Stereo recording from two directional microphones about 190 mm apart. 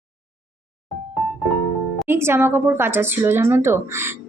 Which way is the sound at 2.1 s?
15° right (ahead or behind).